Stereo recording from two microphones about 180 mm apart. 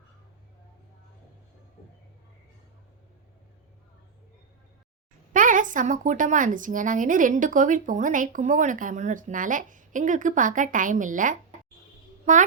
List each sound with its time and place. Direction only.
5.3 s speech: 45° right (ahead or behind)